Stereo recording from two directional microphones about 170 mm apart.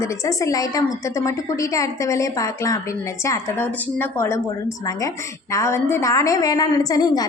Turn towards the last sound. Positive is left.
turn(degrees=20)  # may be behind; listen again after turning